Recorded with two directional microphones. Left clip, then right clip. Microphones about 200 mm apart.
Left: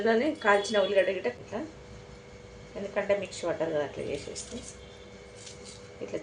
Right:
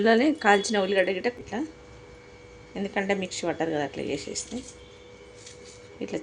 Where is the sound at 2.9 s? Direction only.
50° right (ahead or behind).